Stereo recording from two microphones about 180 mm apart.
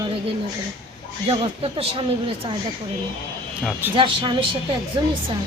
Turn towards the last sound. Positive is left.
turn(degrees=-25)  # may be behind; listen again after turning